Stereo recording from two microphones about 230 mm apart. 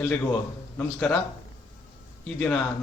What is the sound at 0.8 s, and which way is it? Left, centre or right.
Speech, centre.